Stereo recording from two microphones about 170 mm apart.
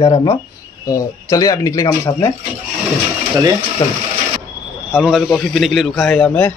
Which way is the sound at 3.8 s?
25° left (ahead or behind).